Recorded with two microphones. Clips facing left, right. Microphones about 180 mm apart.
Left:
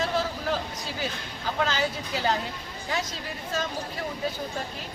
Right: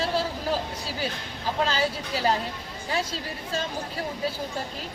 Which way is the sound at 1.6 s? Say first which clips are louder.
Right 1 dB; 35° right (ahead or behind).